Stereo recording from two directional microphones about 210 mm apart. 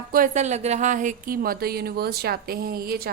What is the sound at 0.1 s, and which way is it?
Speech, 35° right (ahead or behind).